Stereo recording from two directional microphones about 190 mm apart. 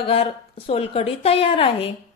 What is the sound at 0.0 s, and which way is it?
A woman's voice, 30° left (ahead or behind).